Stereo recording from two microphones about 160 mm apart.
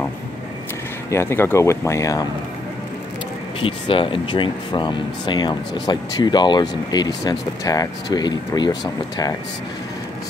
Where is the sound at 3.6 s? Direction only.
35° left (ahead or behind).